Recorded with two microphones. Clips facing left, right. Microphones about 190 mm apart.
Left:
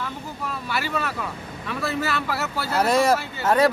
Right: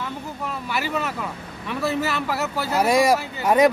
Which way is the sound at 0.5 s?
15° right (ahead or behind).